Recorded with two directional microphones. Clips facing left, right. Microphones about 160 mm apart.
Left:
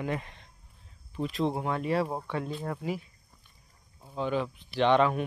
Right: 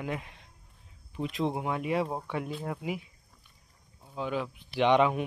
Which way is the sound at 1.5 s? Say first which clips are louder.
Left 1 dB; 10° right (ahead or behind).